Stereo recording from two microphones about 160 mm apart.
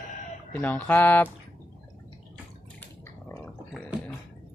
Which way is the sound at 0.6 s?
10° left (ahead or behind).